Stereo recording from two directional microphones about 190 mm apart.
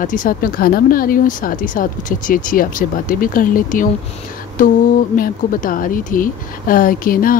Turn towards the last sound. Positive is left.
turn(degrees=45)  # may be behind; listen again after turning